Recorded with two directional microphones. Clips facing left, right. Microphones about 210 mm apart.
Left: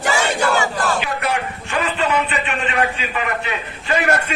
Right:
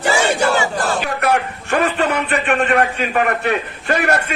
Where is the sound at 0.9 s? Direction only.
55° right (ahead or behind).